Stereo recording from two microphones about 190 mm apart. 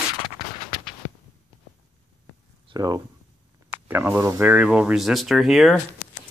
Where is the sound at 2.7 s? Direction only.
20° right (ahead or behind).